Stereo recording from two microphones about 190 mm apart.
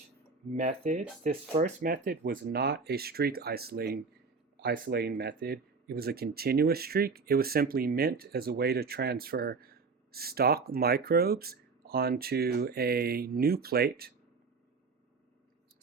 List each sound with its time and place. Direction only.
0.5 s speech: 40° right (ahead or behind); by 14.1 s 55° right (ahead or behind)